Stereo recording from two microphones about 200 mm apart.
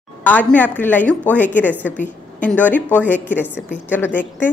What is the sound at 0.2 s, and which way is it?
A woman's voice, 5° left (ahead or behind).